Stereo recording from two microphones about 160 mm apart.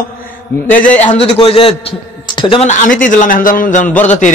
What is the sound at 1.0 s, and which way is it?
A man's voice, 45° left (ahead or behind).